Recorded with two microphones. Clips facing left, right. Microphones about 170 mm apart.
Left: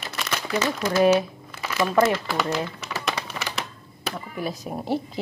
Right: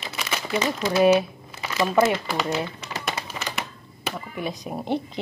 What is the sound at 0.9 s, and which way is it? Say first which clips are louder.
Speech: right 1 dB; 20° right (ahead or behind).